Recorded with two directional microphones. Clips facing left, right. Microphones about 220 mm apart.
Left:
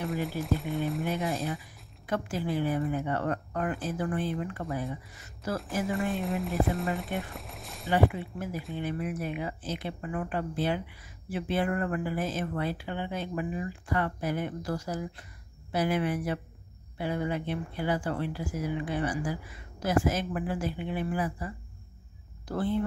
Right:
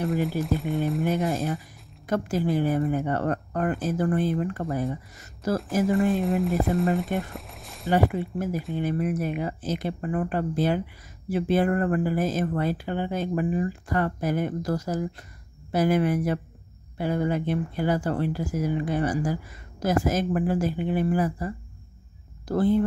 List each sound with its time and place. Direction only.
0.0 s speech: centre (ahead or behind)
1.3 s speech: 50° right (ahead or behind)
5.9 s speech: centre (ahead or behind)
7.9 s speech: 45° right (ahead or behind)